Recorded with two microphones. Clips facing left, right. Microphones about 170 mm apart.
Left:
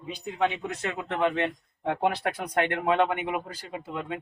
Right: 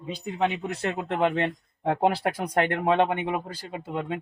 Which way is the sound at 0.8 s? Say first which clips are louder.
Right 2 dB; 35° right (ahead or behind).